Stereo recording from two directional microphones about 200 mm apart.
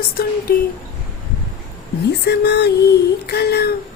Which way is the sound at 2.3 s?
55° left (ahead or behind).